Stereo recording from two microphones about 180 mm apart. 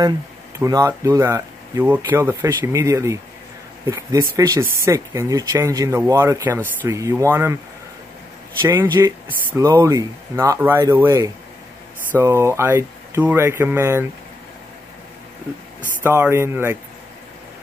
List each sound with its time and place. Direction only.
0.6 s speech: 20° right (ahead or behind)
8.6 s speech: 15° right (ahead or behind)
16.0 s speech: 15° right (ahead or behind)